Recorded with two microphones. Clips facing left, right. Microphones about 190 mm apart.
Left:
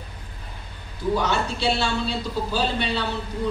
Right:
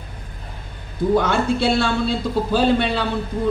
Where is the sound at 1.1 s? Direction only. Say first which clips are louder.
Right 7 dB; 55° right (ahead or behind).